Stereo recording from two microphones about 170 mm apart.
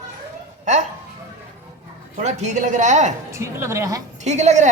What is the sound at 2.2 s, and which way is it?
Speech, 45° right (ahead or behind).